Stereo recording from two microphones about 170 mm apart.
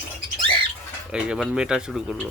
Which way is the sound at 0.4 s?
30° right (ahead or behind).